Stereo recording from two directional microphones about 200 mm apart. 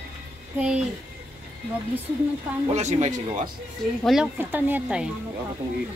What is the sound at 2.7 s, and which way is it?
Speech, 35° right (ahead or behind).